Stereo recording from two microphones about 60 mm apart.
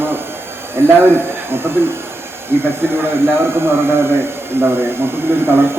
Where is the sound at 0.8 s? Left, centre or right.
Right.